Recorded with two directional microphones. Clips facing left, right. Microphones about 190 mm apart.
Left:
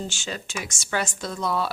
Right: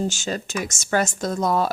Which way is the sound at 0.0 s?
45° right (ahead or behind).